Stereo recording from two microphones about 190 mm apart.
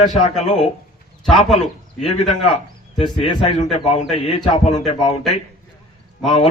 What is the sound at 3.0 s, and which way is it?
Speech, 25° left (ahead or behind).